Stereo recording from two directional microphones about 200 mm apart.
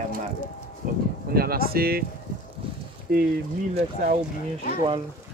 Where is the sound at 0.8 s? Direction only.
45° right (ahead or behind).